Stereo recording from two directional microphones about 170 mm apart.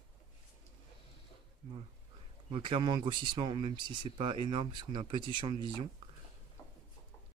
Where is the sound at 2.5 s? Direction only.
30° right (ahead or behind).